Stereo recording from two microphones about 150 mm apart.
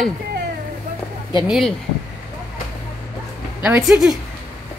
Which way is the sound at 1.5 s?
Centre (ahead or behind).